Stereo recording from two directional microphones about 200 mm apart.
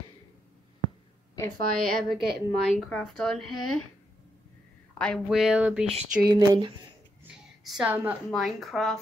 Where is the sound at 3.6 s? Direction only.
90° left.